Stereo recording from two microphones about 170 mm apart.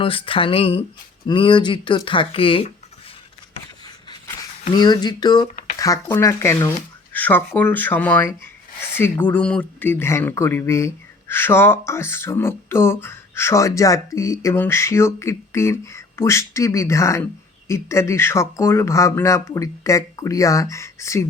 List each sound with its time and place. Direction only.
0.0 s speech: 30° left (ahead or behind)
4.7 s speech: 25° left (ahead or behind)